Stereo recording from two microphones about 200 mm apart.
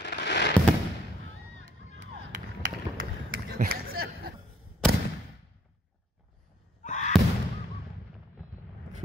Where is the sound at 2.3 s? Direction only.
40° right (ahead or behind).